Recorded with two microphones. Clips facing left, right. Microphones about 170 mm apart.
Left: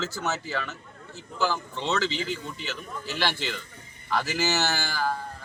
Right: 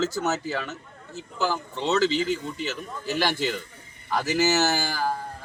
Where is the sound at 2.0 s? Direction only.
45° right (ahead or behind).